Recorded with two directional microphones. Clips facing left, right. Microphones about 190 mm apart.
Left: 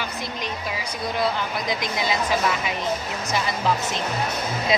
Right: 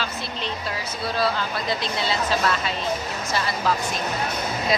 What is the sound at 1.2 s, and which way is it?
Speech, 15° left (ahead or behind).